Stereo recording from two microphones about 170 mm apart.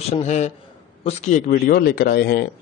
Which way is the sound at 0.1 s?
40° left (ahead or behind).